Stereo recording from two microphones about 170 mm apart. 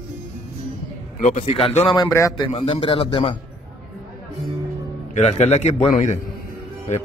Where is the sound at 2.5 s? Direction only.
35° left (ahead or behind).